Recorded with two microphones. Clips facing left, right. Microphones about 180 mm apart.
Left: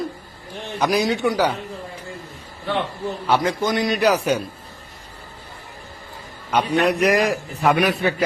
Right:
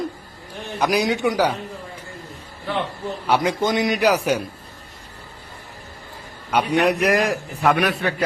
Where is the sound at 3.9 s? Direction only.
10° right (ahead or behind).